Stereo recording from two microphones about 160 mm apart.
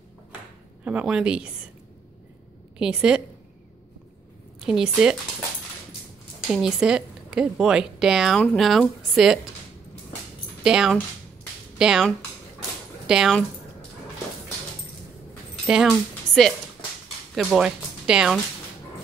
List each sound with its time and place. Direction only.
0.8 s speech: 5° right (ahead or behind)
2.8 s speech: 5° right (ahead or behind)
4.6 s speech: 5° right (ahead or behind)
6.5 s speech: 5° right (ahead or behind)
10.6 s speech: 5° right (ahead or behind)
15.6 s speech: 5° right (ahead or behind)
16.3 s music: 45° left (ahead or behind)
17.4 s speech: 5° right (ahead or behind)